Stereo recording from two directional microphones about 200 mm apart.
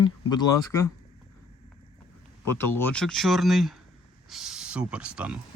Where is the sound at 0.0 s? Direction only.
20° left (ahead or behind).